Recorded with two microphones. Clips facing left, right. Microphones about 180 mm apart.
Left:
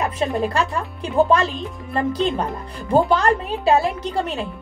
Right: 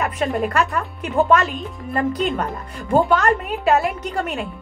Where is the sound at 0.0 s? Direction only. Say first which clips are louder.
Even; 30° left (ahead or behind).